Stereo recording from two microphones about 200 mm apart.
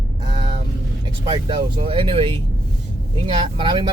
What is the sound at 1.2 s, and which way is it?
Speech, 25° right (ahead or behind).